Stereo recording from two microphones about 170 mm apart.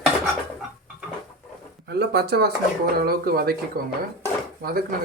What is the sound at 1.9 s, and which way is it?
Speech, 70° right (ahead or behind).